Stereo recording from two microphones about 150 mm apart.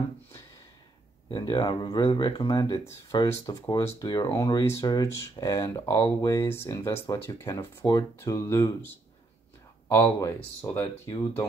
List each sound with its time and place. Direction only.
1.3 s speech: 30° left (ahead or behind)
10.1 s speech: 20° left (ahead or behind)